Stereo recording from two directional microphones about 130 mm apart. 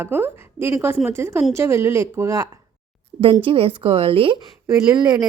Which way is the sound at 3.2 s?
40° right (ahead or behind).